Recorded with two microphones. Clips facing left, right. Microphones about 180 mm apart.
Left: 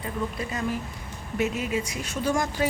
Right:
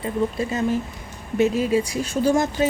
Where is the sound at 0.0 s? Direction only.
25° right (ahead or behind).